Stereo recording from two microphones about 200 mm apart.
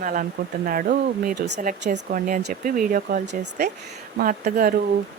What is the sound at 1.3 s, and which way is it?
Speech, 60° right (ahead or behind).